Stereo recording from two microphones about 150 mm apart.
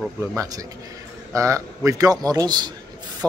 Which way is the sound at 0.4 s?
25° right (ahead or behind).